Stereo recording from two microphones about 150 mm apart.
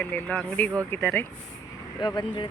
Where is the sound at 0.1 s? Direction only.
10° left (ahead or behind).